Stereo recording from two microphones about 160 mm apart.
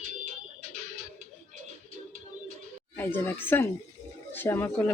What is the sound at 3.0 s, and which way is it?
Speech, 15° left (ahead or behind).